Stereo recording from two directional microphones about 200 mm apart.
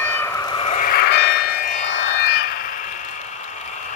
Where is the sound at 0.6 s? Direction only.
30° left (ahead or behind).